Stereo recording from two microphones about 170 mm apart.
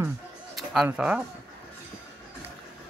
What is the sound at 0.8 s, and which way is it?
Speech, 5° right (ahead or behind).